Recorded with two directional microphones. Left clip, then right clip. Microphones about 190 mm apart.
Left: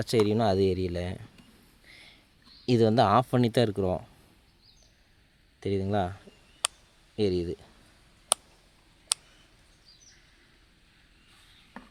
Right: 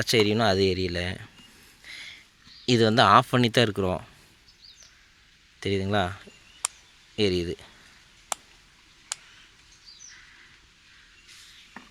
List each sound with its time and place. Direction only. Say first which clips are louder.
0.0 s speech: right 3 dB; 10° left (ahead or behind)
1.9 s a sound: right 11 dB; 5° left (ahead or behind)
2.6 s speech: right 4 dB; 10° left (ahead or behind)
5.5 s speech: right 3 dB; centre (ahead or behind)